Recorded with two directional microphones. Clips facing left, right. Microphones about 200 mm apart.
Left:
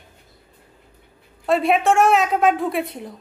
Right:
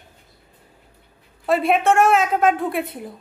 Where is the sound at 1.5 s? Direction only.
Centre (ahead or behind).